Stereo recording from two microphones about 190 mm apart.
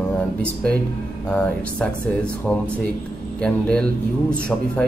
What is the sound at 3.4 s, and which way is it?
Speech, 5° left (ahead or behind).